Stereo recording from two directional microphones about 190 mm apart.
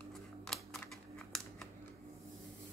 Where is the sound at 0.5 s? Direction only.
Centre (ahead or behind).